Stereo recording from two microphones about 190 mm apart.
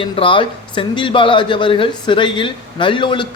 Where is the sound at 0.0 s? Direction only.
25° left (ahead or behind).